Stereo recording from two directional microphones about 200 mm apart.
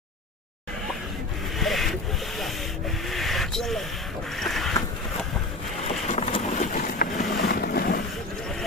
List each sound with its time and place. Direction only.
1.5 s rub: centre (ahead or behind)
3.1 s a sound: centre (ahead or behind)
5.9 s vehicle: 30° left (ahead or behind); by 8.0 s 50° left (ahead or behind)